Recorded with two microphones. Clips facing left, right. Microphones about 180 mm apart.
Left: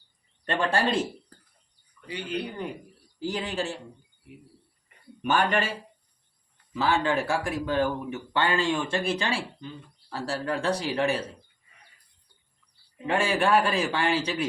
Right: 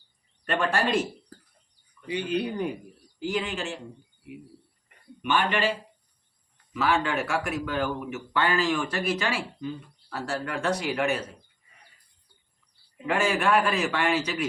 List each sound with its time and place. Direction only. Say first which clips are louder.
0.4 s speech: even; 30° left (ahead or behind)
2.0 s speech: right 5 dB; 15° right (ahead or behind)
3.2 s a man's voice: even; 35° left (ahead or behind)
5.2 s a man's voice: left 1 dB; 40° left (ahead or behind)
6.7 s a man's voice: left 1 dB; 30° left (ahead or behind)
13.1 s speech: even; 30° left (ahead or behind)